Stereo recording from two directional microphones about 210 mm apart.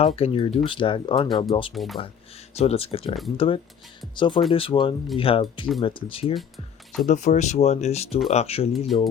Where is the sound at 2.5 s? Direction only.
30° left (ahead or behind).